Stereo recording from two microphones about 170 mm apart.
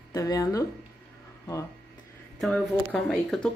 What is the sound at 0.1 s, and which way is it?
Speech, 20° left (ahead or behind).